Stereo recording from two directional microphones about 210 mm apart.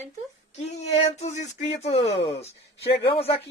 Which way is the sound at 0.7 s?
30° left (ahead or behind).